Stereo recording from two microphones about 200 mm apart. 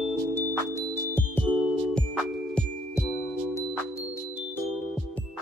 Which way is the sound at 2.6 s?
5° left (ahead or behind).